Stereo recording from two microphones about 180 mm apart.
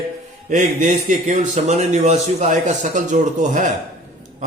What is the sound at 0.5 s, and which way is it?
A man's voice, 45° right (ahead or behind).